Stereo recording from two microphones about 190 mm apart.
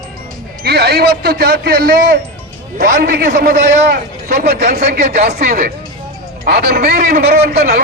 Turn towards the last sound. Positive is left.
turn(degrees=-55)  # may be behind; listen again after turning